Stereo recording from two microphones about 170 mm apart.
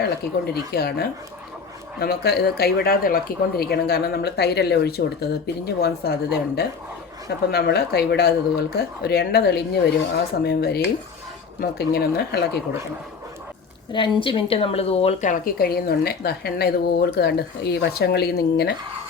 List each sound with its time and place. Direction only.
0.0 s speech: 70° left (ahead or behind)
13.9 s speech: 30° left (ahead or behind); by 18.7 s 75° left (ahead or behind)